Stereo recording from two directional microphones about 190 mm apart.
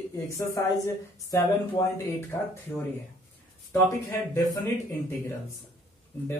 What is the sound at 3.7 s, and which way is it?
Speech, 15° left (ahead or behind).